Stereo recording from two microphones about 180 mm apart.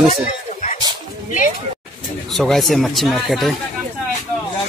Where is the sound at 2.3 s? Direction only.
Centre (ahead or behind).